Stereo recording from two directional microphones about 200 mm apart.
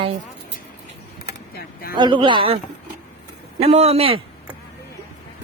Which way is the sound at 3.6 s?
30° right (ahead or behind).